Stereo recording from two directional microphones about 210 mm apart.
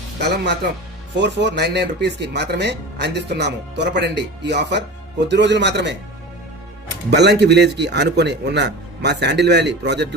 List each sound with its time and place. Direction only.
0.2 s speech: 55° right (ahead or behind)
7.1 s speech: 55° right (ahead or behind)